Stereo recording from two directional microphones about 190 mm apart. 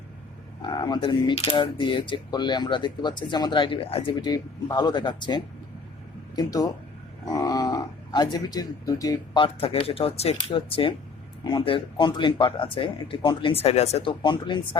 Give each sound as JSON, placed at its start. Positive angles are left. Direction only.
{"t": 0.6, "sound": "speech", "side_deg": 25}